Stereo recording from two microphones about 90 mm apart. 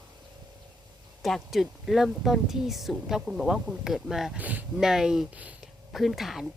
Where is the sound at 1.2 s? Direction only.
Centre (ahead or behind).